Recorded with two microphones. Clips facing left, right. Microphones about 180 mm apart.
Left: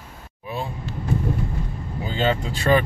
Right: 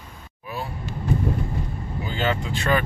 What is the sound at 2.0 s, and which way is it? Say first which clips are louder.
Vehicle: left 3 dB; 30° left (ahead or behind).